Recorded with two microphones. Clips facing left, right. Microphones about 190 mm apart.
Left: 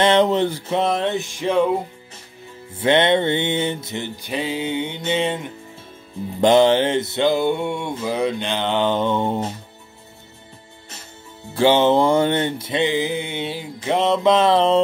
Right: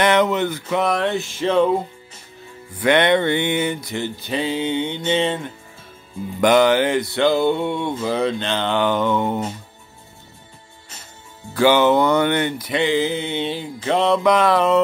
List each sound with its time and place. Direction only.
0.0 s mantra: 30° left (ahead or behind); by 1.8 s 10° left (ahead or behind)
2.7 s mantra: 25° left (ahead or behind)
4.3 s music: 5° left (ahead or behind)
6.4 s mantra: 25° left (ahead or behind)
11.5 s mantra: 25° left (ahead or behind)